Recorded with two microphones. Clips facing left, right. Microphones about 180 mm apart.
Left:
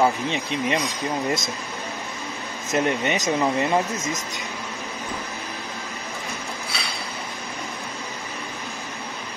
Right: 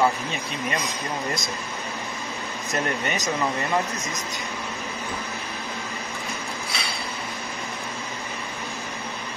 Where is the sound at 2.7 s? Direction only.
20° left (ahead or behind).